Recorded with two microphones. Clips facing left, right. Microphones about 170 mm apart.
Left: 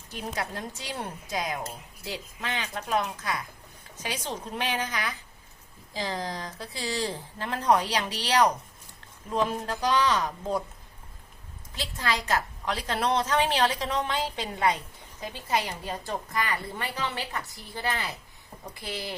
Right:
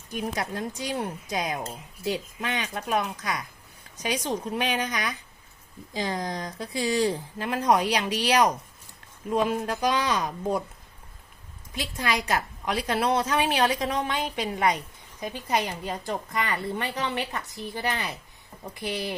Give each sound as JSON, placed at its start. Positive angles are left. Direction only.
{"t": 0.7, "sound": "a woman's voice", "side_deg": -15}
{"t": 11.7, "sound": "a woman's voice", "side_deg": -15}